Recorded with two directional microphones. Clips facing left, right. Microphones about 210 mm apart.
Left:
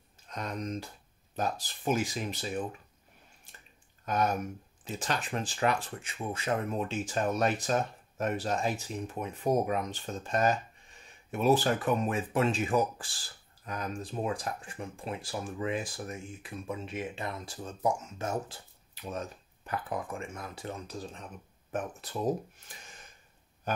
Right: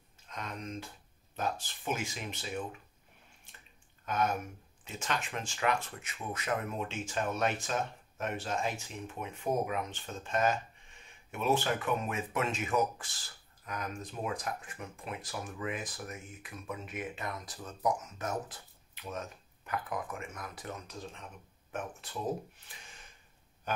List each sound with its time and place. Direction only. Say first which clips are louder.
0.3 s speech: left 5 dB; 35° left (ahead or behind)
4.0 s speech: left 3 dB; 35° left (ahead or behind)